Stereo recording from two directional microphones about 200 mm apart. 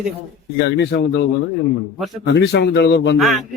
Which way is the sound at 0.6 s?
60° left (ahead or behind).